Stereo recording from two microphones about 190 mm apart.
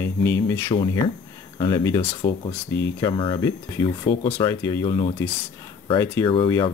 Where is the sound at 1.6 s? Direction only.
20° left (ahead or behind).